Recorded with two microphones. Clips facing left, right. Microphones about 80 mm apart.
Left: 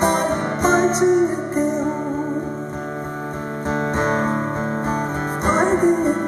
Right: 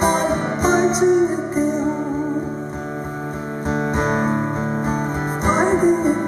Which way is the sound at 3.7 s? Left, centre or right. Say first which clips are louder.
Even; centre.